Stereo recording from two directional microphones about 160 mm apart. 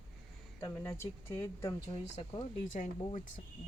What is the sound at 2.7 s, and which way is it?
Speech, 55° left (ahead or behind).